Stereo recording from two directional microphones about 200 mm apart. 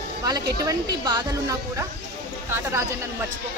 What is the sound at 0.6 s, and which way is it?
A woman's voice, 20° right (ahead or behind).